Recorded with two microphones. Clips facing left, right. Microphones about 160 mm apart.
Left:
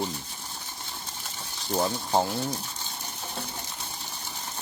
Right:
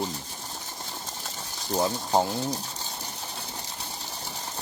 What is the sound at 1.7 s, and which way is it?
Speech, 15° right (ahead or behind).